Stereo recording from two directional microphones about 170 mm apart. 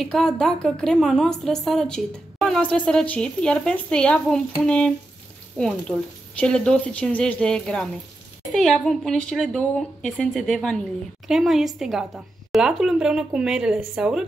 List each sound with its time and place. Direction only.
0.0 s a woman's voice: 5° left (ahead or behind)